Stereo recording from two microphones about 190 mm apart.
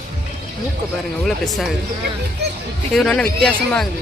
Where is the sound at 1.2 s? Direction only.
Centre (ahead or behind).